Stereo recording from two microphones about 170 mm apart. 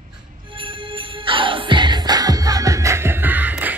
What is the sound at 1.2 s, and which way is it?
Music, 30° right (ahead or behind).